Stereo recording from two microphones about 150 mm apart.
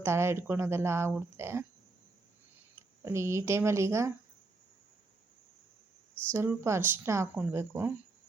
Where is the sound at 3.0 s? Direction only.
20° right (ahead or behind).